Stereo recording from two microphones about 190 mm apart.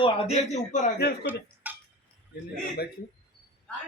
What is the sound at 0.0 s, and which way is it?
Speech, 30° left (ahead or behind).